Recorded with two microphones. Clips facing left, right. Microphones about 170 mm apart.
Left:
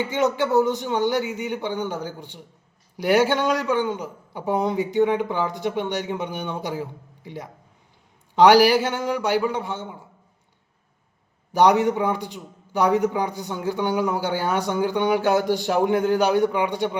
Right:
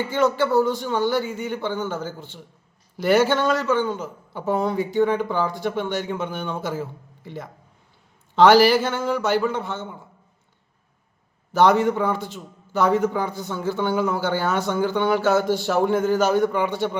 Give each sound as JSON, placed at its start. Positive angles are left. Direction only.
{"t": 0.0, "sound": "a man's voice", "side_deg": 20}
{"t": 11.5, "sound": "a man's voice", "side_deg": 15}